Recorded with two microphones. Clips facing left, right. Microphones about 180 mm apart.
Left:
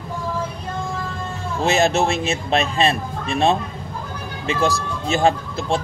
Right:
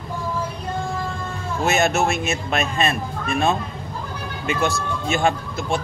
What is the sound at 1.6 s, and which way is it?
Speech, 30° left (ahead or behind).